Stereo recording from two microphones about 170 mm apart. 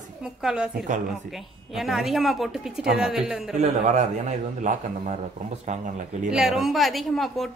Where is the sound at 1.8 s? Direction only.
Centre (ahead or behind).